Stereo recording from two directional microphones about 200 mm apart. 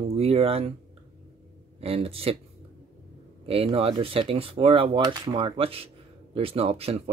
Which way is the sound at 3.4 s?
30° right (ahead or behind).